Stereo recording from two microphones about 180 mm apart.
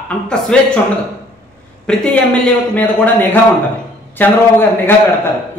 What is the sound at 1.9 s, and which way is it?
A man's voice, 5° left (ahead or behind).